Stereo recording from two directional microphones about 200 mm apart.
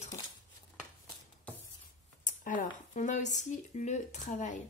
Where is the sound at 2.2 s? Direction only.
40° left (ahead or behind).